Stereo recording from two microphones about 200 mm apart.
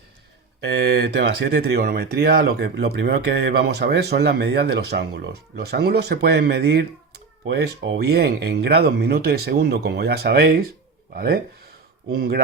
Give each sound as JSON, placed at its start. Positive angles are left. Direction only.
{"t": 0.6, "sound": "speech", "side_deg": -55}